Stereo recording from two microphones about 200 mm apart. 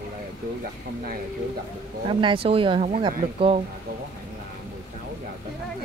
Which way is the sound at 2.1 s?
25° right (ahead or behind).